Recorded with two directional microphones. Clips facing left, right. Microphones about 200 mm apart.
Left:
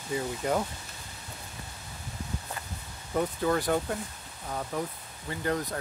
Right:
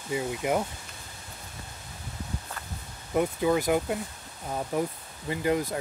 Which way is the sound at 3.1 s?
10° right (ahead or behind).